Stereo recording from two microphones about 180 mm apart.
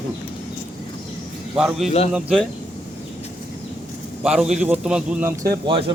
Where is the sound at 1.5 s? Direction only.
5° right (ahead or behind).